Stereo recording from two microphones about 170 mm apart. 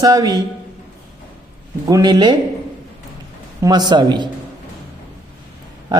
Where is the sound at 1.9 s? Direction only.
20° right (ahead or behind).